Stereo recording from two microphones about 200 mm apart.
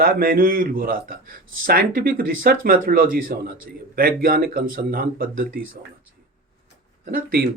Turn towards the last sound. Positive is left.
turn(degrees=-50)  # may be behind; listen again after turning